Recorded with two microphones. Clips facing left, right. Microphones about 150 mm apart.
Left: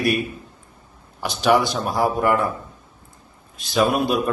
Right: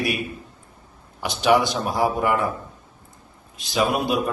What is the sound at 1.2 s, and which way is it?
Speech, 15° right (ahead or behind).